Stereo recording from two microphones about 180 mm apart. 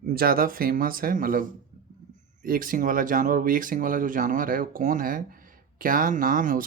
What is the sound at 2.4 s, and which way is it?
Speech, 50° right (ahead or behind).